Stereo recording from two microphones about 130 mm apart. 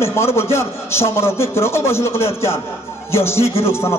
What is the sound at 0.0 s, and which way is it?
A man's voice, 20° left (ahead or behind).